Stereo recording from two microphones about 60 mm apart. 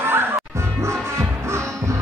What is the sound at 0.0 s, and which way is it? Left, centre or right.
Music, right.